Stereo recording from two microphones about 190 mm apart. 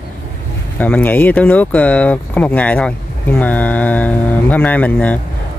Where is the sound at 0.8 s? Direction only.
10° left (ahead or behind).